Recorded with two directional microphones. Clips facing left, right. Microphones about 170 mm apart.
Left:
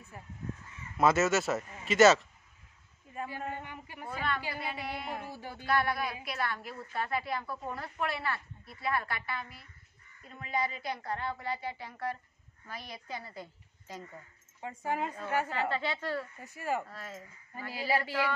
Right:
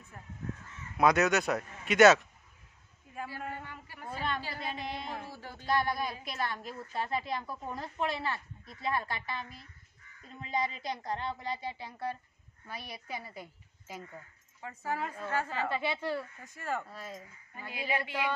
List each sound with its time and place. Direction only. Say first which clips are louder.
0.1 s a woman's voice: even; 5° left (ahead or behind)
3.3 s a woman's voice: left 2 dB; 20° left (ahead or behind)
5.7 s a woman's voice: even; 20° right (ahead or behind)
14.6 s a woman's voice: left 2 dB; 20° left (ahead or behind)
15.7 s speech: right 1 dB; 10° right (ahead or behind)
16.5 s a woman's voice: left 3 dB; 10° left (ahead or behind)
16.9 s speech: right 1 dB; 15° right (ahead or behind)
17.6 s a sound: left 3 dB; 35° left (ahead or behind)